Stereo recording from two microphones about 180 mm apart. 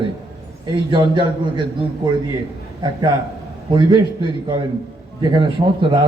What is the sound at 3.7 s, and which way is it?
Speech, 25° right (ahead or behind).